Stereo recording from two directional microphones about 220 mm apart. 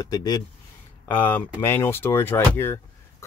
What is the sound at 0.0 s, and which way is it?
Speech, 15° left (ahead or behind).